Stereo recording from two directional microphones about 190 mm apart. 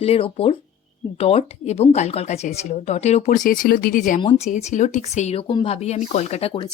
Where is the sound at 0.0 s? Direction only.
30° left (ahead or behind).